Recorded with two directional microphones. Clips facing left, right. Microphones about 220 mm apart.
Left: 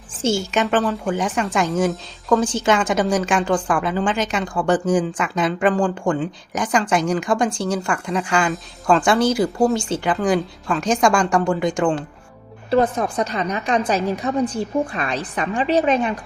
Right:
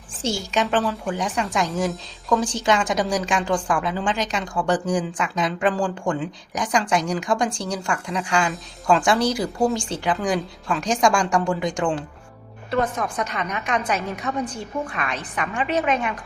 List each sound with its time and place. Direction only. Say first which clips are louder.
0.1 s a woman's voice: left 5 dB; centre (ahead or behind)
12.7 s a woman's voice: left 5 dB; 30° left (ahead or behind)